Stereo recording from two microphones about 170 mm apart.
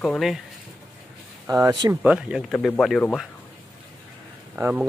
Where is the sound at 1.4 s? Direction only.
20° right (ahead or behind).